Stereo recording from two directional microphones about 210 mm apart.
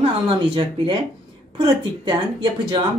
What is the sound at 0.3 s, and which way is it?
Speech, 25° right (ahead or behind).